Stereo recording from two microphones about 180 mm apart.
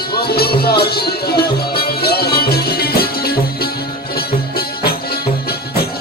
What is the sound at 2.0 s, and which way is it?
Music, 60° left (ahead or behind).